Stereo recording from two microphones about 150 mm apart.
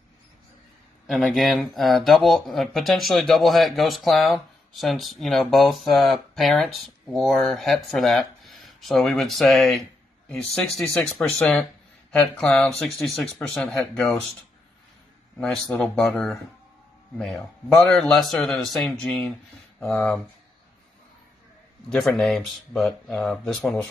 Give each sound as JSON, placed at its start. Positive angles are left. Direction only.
{"t": 1.2, "sound": "speech", "side_deg": 0}
{"t": 15.3, "sound": "speech", "side_deg": 5}
{"t": 21.8, "sound": "speech", "side_deg": 5}